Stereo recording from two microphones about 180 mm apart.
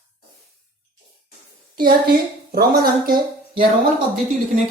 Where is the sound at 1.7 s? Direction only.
50° right (ahead or behind).